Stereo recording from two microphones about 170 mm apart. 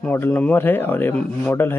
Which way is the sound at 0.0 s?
10° left (ahead or behind).